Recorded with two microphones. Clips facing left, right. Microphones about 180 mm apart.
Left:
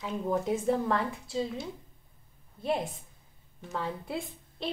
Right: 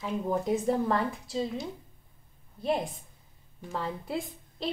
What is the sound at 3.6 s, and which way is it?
A woman's voice, centre (ahead or behind).